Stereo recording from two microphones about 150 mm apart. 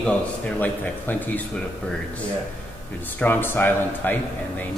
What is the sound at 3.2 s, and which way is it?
Speech, 15° left (ahead or behind).